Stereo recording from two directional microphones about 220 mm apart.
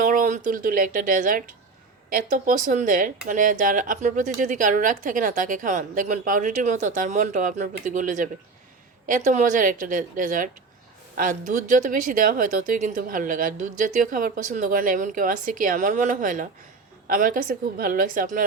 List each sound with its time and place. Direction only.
0.0 s speech: 35° right (ahead or behind)